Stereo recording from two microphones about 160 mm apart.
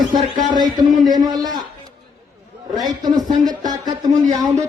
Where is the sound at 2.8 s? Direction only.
25° right (ahead or behind).